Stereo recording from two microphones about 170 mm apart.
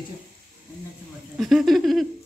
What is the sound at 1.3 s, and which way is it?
Speech, centre (ahead or behind).